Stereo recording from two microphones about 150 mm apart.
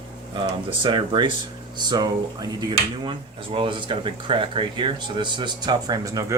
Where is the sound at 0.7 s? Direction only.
35° right (ahead or behind).